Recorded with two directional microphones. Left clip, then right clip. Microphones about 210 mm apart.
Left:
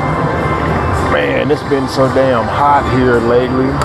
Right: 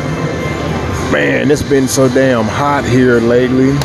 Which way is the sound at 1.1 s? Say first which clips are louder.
Right 3 dB; 55° right (ahead or behind).